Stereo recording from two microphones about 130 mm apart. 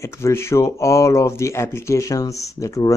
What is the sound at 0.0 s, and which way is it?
Speech, 20° left (ahead or behind).